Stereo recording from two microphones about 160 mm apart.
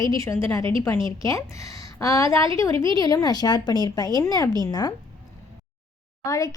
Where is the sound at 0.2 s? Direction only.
15° left (ahead or behind).